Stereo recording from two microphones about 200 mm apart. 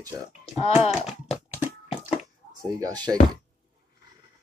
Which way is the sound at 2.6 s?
20° right (ahead or behind).